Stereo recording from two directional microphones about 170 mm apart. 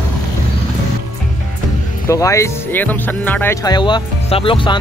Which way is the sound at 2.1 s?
20° left (ahead or behind).